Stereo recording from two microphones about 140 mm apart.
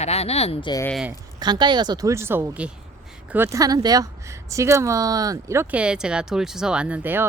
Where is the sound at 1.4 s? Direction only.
30° right (ahead or behind).